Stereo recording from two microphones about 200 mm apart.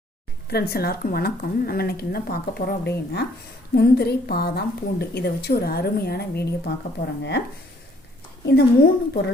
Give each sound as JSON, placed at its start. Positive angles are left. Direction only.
{"t": 0.5, "sound": "a woman's voice", "side_deg": 50}
{"t": 8.4, "sound": "a woman's voice", "side_deg": 50}